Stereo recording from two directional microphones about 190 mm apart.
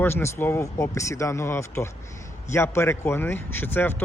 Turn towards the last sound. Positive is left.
turn(degrees=10)  # may be behind; listen again after turning